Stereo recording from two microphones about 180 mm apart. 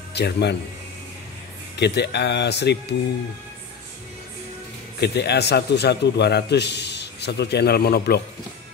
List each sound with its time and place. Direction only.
0.1 s speech: 70° left (ahead or behind)
1.8 s a man's voice: 70° left (ahead or behind)
5.0 s a man's voice: 70° left (ahead or behind)